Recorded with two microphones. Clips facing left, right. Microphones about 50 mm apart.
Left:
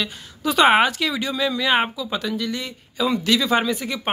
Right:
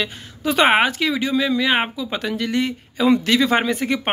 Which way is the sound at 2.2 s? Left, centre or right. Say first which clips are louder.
Right 4 dB; right.